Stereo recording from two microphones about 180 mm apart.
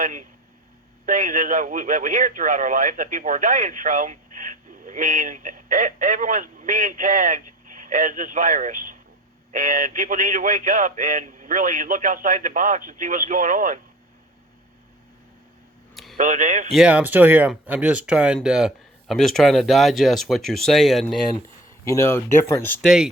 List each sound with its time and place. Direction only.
0.0 s speech: 45° right (ahead or behind)
16.1 s speech: 45° right (ahead or behind)
16.7 s speech: 5° right (ahead or behind)
21.8 s speech: 15° left (ahead or behind)
22.8 s speech: 5° right (ahead or behind)